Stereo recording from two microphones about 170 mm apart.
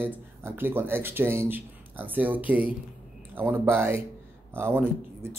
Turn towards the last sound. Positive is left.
turn(degrees=-10)  # may be behind; listen again after turning